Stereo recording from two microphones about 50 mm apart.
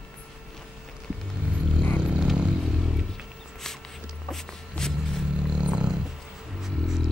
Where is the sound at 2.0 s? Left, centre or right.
Centre.